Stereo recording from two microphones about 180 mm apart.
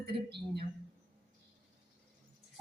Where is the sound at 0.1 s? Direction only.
30° right (ahead or behind).